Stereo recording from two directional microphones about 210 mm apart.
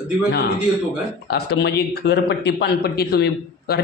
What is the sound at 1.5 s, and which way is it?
A man's voice, 50° left (ahead or behind).